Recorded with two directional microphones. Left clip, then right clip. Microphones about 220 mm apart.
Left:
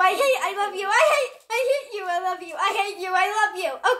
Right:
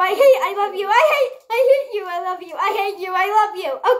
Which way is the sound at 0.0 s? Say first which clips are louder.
Right 6 dB; 15° left (ahead or behind).